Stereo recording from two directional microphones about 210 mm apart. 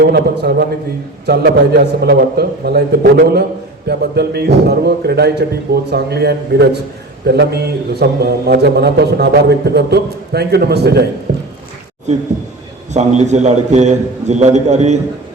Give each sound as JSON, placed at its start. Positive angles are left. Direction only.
{"t": 0.0, "sound": "a man's voice", "side_deg": -50}
{"t": 11.3, "sound": "squish", "side_deg": -50}
{"t": 12.9, "sound": "a man's voice", "side_deg": -35}